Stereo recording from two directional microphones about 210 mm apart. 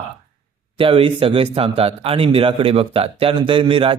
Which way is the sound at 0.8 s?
25° right (ahead or behind).